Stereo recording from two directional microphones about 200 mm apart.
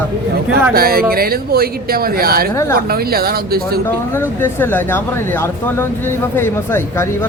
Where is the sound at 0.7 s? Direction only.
50° right (ahead or behind).